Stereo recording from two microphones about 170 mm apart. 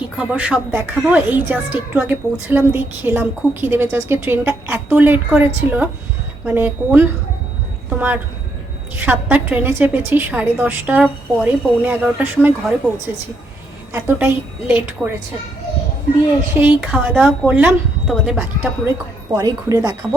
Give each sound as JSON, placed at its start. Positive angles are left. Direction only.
{"t": 0.2, "sound": "a woman's voice", "side_deg": -5}
{"t": 16.6, "sound": "a woman's voice", "side_deg": -5}
{"t": 19.3, "sound": "speech", "side_deg": -20}